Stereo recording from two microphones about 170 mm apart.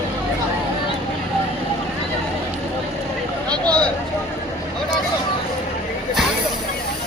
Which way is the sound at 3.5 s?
5° left (ahead or behind).